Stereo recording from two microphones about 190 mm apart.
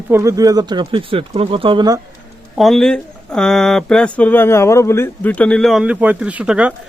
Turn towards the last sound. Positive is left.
turn(degrees=-5)  # may be behind; listen again after turning